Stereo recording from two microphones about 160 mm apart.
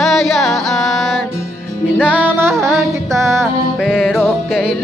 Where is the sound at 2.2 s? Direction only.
15° right (ahead or behind).